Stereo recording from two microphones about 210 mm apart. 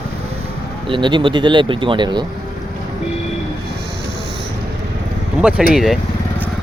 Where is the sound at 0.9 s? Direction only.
20° right (ahead or behind).